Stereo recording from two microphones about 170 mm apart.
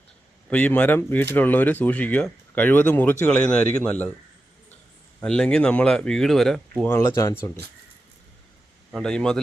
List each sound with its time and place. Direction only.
0.5 s speech: 10° left (ahead or behind)
5.2 s speech: 5° left (ahead or behind)
6.9 s speech: 15° left (ahead or behind)
9.0 s speech: 5° left (ahead or behind)